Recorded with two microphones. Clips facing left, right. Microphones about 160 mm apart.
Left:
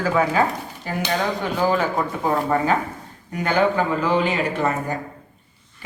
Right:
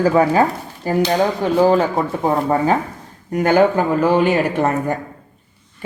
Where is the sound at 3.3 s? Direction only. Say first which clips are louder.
Right 6 dB; 50° right (ahead or behind).